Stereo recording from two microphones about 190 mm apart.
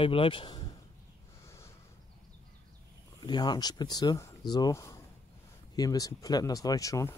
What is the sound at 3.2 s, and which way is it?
Speech, 20° left (ahead or behind).